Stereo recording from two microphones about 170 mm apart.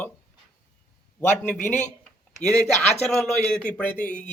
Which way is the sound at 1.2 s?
45° left (ahead or behind).